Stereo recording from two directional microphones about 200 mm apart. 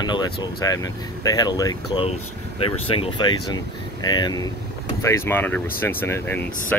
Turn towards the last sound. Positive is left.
turn(degrees=10)  # may be behind; listen again after turning